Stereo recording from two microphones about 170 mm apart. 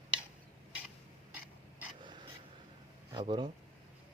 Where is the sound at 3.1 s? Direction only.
25° right (ahead or behind).